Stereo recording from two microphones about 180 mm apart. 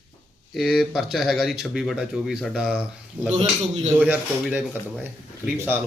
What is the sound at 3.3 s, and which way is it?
Speech, 35° right (ahead or behind).